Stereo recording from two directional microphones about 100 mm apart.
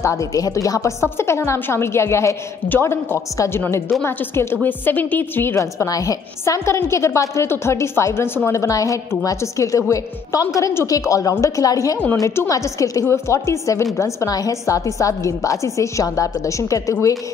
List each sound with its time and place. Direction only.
0.0 s a woman's voice: 30° left (ahead or behind)